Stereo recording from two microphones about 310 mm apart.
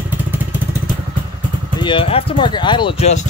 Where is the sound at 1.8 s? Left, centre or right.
Centre.